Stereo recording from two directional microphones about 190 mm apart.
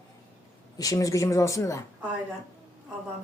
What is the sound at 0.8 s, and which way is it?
Speech, 15° left (ahead or behind).